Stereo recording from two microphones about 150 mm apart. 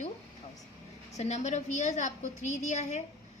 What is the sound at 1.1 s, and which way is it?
A woman's voice, 50° left (ahead or behind).